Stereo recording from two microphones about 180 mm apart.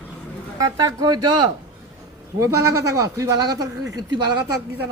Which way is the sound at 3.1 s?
20° right (ahead or behind).